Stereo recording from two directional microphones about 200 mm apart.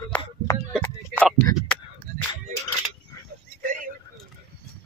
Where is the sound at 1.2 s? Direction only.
10° left (ahead or behind).